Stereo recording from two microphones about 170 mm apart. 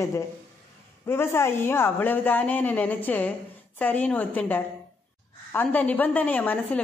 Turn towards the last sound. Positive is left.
turn(degrees=10)  # may be behind; listen again after turning